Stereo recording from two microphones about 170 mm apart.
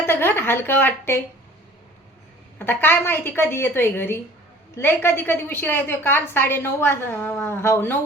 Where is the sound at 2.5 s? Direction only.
10° left (ahead or behind).